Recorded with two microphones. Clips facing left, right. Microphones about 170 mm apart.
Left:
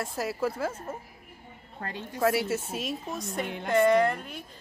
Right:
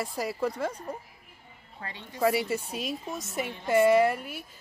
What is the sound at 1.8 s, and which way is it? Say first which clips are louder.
Speech: left 5 dB; 50° left (ahead or behind).